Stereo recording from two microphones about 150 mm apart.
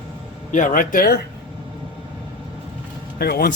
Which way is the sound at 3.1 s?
90° left.